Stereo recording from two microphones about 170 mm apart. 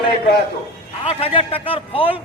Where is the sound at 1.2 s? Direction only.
30° left (ahead or behind).